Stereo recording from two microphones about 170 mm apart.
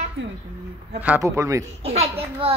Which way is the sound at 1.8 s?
35° right (ahead or behind).